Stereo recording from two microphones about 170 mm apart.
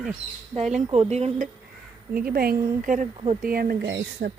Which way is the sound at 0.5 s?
40° right (ahead or behind).